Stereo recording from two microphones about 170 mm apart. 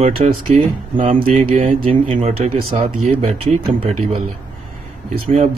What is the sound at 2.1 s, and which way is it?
Speech, 35° right (ahead or behind).